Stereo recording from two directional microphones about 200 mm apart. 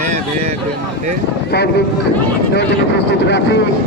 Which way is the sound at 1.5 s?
55° left (ahead or behind).